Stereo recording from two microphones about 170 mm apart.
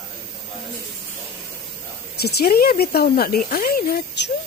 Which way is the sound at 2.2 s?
70° left (ahead or behind).